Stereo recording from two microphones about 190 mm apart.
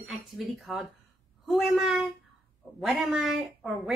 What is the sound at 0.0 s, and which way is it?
A woman's voice, centre (ahead or behind).